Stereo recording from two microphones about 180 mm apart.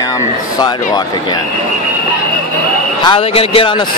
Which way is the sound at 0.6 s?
20° left (ahead or behind).